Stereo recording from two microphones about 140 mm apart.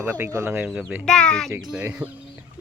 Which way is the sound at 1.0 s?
5° left (ahead or behind).